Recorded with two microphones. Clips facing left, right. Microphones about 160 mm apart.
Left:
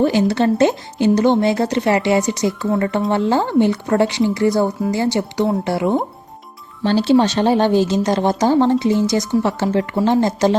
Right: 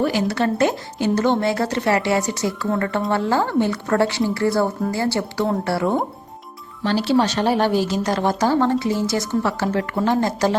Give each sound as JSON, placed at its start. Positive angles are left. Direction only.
{"t": 0.0, "sound": "speech", "side_deg": 20}